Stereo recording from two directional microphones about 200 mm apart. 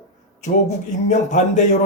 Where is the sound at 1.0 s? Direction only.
35° left (ahead or behind).